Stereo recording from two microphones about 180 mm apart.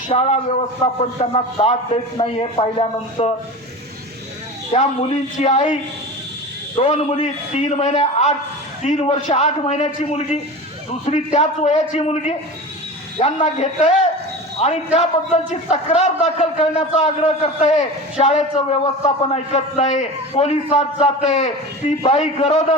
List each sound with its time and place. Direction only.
0.1 s a man's voice: 35° left (ahead or behind)
5.4 s a man's voice: 40° left (ahead or behind)
6.7 s a man's voice: 35° left (ahead or behind)